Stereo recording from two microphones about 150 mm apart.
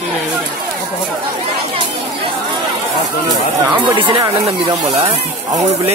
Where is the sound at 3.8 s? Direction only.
35° right (ahead or behind).